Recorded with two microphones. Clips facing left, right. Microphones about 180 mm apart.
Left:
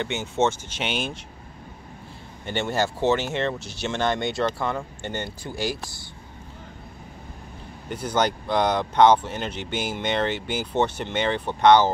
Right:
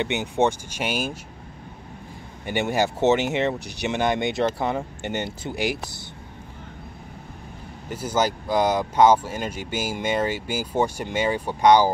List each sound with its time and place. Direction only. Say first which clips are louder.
0.0 s speech: right 2 dB; 15° right (ahead or behind)
2.4 s speech: right 2 dB; 15° right (ahead or behind)
7.9 s speech: even; 5° right (ahead or behind)